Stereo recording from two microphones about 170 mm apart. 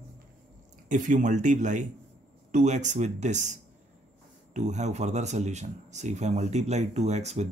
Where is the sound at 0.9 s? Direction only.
50° right (ahead or behind).